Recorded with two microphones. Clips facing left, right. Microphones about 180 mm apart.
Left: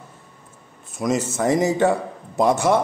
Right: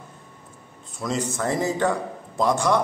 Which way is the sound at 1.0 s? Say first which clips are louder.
Left 5 dB; 15° left (ahead or behind).